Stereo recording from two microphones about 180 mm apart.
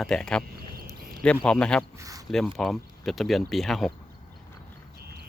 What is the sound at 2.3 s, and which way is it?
Speech, centre (ahead or behind).